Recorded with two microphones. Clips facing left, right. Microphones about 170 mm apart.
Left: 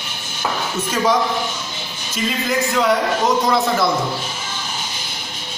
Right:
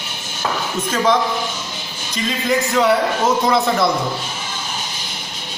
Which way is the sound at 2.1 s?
Centre (ahead or behind).